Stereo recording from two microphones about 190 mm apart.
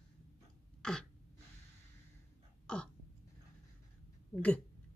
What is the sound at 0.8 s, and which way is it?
Throat clearing, 5° left (ahead or behind).